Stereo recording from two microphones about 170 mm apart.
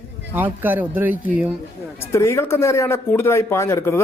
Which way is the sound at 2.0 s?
15° left (ahead or behind).